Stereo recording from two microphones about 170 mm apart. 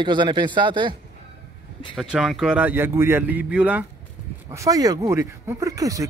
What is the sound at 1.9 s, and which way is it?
A man's voice, centre (ahead or behind).